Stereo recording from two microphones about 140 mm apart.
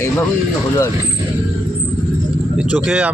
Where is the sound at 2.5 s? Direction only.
10° right (ahead or behind).